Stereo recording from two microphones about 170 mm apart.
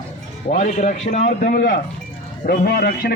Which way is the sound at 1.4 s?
60° left (ahead or behind).